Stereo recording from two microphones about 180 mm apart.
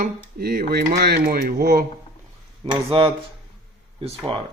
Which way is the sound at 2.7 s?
30° right (ahead or behind).